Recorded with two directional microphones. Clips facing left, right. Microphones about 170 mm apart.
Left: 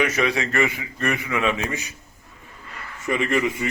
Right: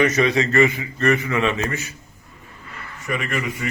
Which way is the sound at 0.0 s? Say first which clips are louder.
Right 4 dB; 10° left (ahead or behind).